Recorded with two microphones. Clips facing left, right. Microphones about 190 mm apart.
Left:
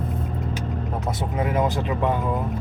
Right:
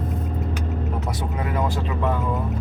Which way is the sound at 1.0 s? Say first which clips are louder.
Left 2 dB; 20° left (ahead or behind).